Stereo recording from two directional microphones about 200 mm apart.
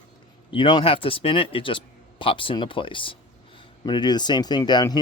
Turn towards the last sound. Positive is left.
turn(degrees=20)  # may be behind; listen again after turning